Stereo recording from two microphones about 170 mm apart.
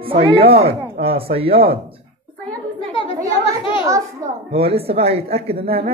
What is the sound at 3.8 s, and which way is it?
Speech, 20° right (ahead or behind).